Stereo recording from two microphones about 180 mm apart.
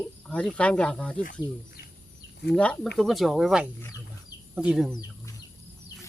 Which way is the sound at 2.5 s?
5° left (ahead or behind).